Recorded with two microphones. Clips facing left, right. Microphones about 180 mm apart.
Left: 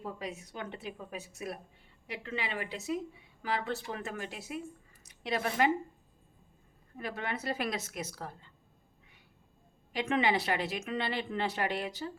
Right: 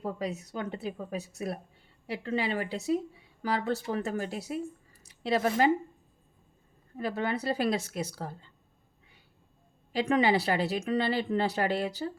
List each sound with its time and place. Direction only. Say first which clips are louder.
0.0 s speech: right 6 dB; 40° right (ahead or behind)
6.9 s speech: right 6 dB; 35° right (ahead or behind)
9.9 s speech: right 4 dB; 35° right (ahead or behind)